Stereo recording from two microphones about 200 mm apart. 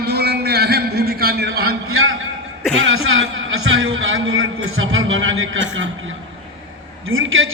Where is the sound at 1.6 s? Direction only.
90° right.